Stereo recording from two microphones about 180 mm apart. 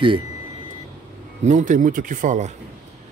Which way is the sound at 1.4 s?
45° right (ahead or behind).